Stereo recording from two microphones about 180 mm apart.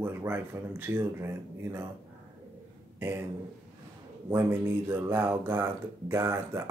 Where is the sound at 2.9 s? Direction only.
10° right (ahead or behind).